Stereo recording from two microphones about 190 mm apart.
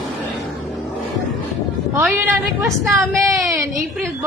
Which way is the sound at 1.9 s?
10° right (ahead or behind).